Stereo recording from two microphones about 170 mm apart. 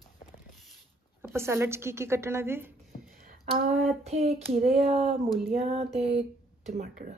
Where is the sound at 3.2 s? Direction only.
50° right (ahead or behind).